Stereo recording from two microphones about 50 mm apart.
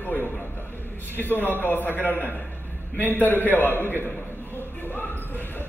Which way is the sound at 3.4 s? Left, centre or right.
Left.